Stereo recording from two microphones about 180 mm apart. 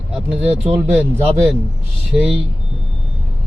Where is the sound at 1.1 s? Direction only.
35° right (ahead or behind).